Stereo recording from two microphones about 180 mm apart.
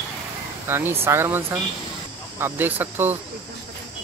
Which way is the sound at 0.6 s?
15° right (ahead or behind).